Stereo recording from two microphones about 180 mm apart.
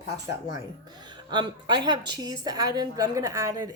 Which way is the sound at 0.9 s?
25° right (ahead or behind).